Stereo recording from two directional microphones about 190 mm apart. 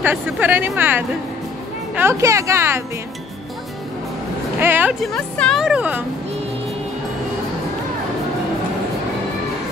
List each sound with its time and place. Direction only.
0.0 s a woman's voice: 10° right (ahead or behind)
4.6 s a woman's voice: 10° right (ahead or behind)
5.1 s speech: 5° left (ahead or behind)